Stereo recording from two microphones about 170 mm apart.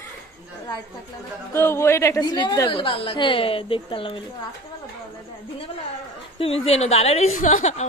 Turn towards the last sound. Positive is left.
turn(degrees=45)  # may be behind; listen again after turning